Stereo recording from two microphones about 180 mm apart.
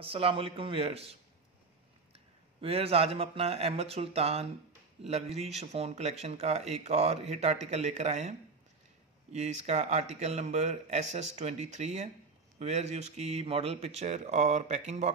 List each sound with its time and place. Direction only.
0.0 s speech: 30° right (ahead or behind)
2.6 s speech: 35° right (ahead or behind)